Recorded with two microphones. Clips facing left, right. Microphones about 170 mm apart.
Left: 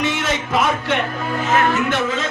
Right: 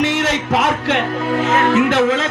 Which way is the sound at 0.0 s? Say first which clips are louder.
Right 4 dB; 75° right (ahead or behind).